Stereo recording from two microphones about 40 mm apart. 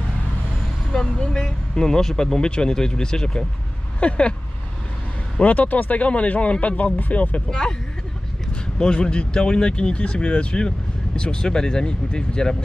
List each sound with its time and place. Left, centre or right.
1.2 s speech: centre
5.4 s speech: left
7.4 s speech: centre
8.7 s speech: centre